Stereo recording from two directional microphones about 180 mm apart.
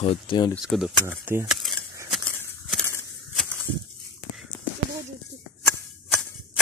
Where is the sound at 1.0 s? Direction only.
15° right (ahead or behind).